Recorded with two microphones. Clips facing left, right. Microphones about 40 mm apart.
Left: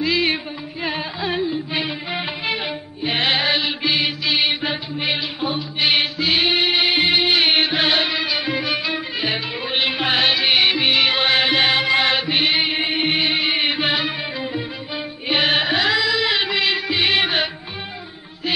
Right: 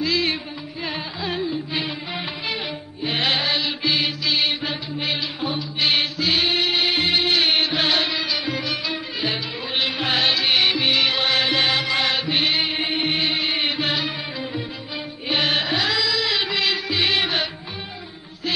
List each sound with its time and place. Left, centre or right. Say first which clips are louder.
0.0 s music: left 3 dB; centre
1.7 s music of bollywood: left 2 dB; centre
2.1 s music: left 5 dB; centre